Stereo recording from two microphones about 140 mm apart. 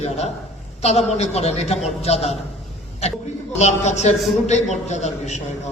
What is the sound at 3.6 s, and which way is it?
A man's voice, 55° left (ahead or behind).